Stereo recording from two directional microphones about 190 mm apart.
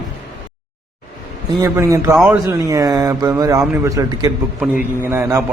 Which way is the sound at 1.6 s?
15° right (ahead or behind).